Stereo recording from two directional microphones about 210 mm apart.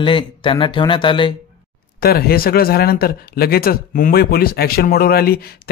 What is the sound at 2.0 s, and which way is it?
Speech, 45° left (ahead or behind).